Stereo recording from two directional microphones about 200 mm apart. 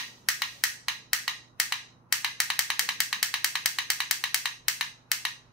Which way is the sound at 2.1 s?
Centre (ahead or behind).